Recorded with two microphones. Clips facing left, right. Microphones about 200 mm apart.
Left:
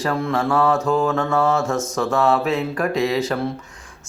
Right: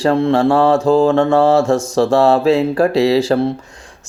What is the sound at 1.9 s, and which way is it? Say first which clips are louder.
Speech: right 6 dB; 30° right (ahead or behind).